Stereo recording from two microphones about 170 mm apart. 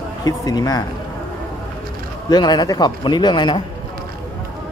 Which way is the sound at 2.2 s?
25° left (ahead or behind).